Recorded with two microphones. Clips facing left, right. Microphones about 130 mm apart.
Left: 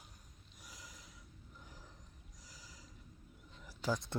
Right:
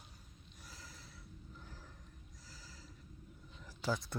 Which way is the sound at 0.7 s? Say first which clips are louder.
Even; 15° left (ahead or behind).